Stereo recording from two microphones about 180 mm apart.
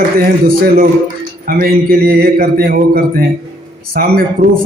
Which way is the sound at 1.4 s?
55° right (ahead or behind).